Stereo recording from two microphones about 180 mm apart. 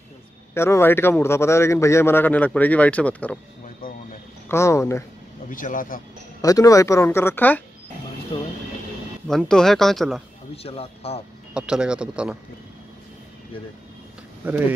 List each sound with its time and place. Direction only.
0.6 s a man's voice: 15° left (ahead or behind)
3.8 s speech: 55° left (ahead or behind)
4.5 s a man's voice: 15° left (ahead or behind)
5.5 s speech: 50° left (ahead or behind)
6.4 s a man's voice: 20° left (ahead or behind)
9.3 s speech: 5° left (ahead or behind)
10.5 s speech: 35° left (ahead or behind)
11.5 s speech: 5° right (ahead or behind)
14.4 s speech: 10° right (ahead or behind)